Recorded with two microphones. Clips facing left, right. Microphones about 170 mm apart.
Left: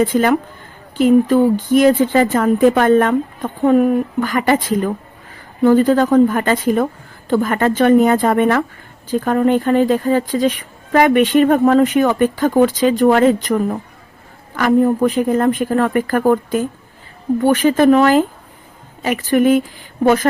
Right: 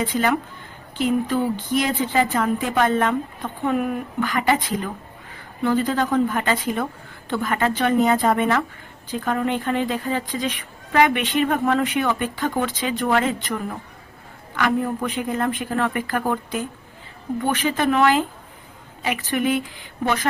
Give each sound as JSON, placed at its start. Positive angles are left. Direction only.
{"t": 0.0, "sound": "speech", "side_deg": 45}